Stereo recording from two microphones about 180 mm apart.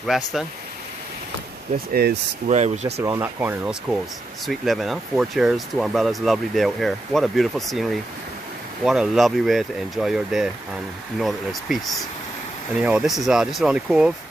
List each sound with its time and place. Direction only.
0.0 s speech: centre (ahead or behind)
1.9 s speech: 55° right (ahead or behind)
2.4 s speech: 40° right (ahead or behind)
3.0 s speech: 15° right (ahead or behind)